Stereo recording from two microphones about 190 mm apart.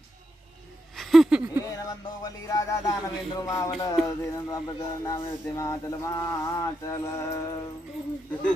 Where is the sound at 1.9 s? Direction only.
20° left (ahead or behind).